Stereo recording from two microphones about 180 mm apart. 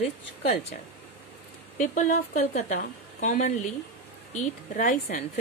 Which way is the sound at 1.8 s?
45° left (ahead or behind).